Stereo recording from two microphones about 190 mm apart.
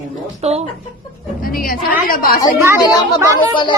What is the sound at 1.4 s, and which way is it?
Speech, 50° left (ahead or behind).